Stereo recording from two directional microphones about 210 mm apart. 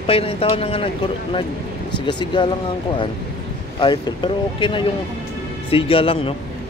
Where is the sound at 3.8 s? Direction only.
20° left (ahead or behind).